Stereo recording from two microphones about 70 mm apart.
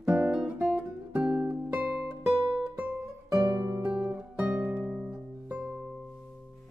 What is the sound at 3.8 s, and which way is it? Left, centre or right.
Guitar, centre.